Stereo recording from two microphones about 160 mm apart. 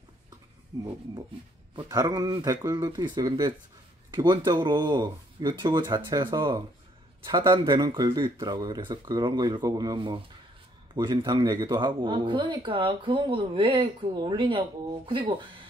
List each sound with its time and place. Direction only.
0.7 s speech: 20° right (ahead or behind)